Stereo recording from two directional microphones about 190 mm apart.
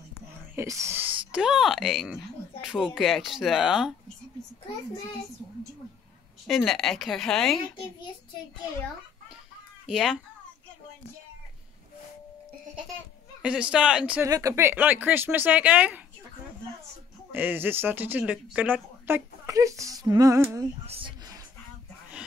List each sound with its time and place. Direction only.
0.6 s speech: 15° right (ahead or behind)
6.4 s speech: centre (ahead or behind)
9.8 s speech: centre (ahead or behind)
13.4 s speech: 5° right (ahead or behind)
17.3 s speech: 10° right (ahead or behind)
20.8 s speech: 30° right (ahead or behind)